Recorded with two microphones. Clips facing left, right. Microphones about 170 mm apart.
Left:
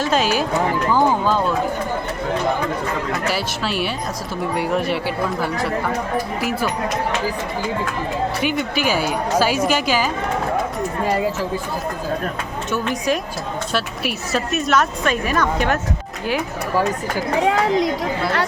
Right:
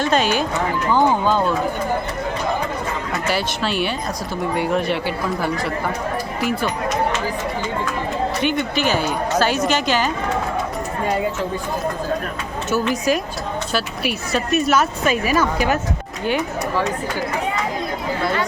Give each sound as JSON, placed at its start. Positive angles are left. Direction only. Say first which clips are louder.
{"t": 0.0, "sound": "speech", "louder": "even", "side_deg": 5}
{"t": 3.2, "sound": "speech", "louder": "right 1 dB", "side_deg": 0}
{"t": 8.4, "sound": "speech", "louder": "right 1 dB", "side_deg": 5}
{"t": 12.7, "sound": "speech", "louder": "right 2 dB", "side_deg": 0}
{"t": 17.4, "sound": "speech", "louder": "left 6 dB", "side_deg": 80}